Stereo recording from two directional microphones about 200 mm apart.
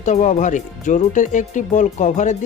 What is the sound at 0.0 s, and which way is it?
Speech, 35° left (ahead or behind).